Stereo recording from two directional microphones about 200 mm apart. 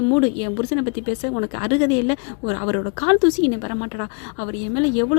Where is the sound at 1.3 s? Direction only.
25° left (ahead or behind).